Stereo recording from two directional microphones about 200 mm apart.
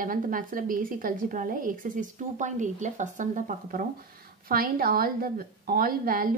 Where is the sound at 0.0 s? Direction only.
45° right (ahead or behind).